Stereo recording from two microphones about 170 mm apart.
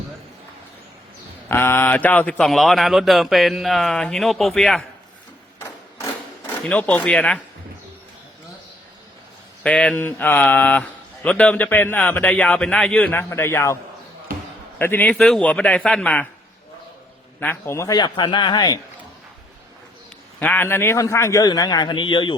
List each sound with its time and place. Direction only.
1.5 s speech: 15° left (ahead or behind)
6.7 s speech: 5° left (ahead or behind)
9.6 s speech: 5° left (ahead or behind)
14.8 s speech: 10° left (ahead or behind)
17.4 s a man's voice: 15° left (ahead or behind)
20.4 s a man's voice: 10° left (ahead or behind); by 22.4 s 30° left (ahead or behind)